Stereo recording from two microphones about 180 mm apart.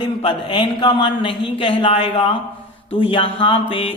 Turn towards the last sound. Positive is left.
turn(degrees=30)  # may be behind; listen again after turning